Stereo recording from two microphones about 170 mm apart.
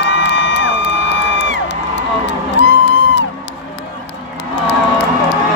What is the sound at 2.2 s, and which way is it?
Music, 90° left.